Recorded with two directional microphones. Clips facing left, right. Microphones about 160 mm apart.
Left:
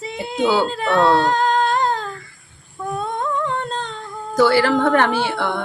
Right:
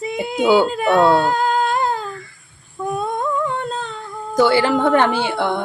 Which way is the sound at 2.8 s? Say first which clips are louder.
Right 2 dB; 10° right (ahead or behind).